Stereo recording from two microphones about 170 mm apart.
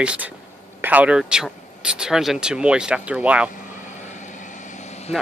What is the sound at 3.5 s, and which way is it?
Vehicle, 50° left (ahead or behind).